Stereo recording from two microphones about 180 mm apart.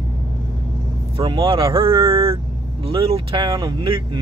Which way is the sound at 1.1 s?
30° right (ahead or behind).